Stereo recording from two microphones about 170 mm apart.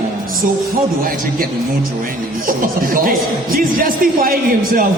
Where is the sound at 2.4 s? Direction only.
55° right (ahead or behind).